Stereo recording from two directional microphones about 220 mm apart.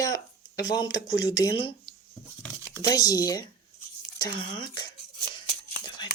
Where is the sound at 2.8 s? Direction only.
15° left (ahead or behind).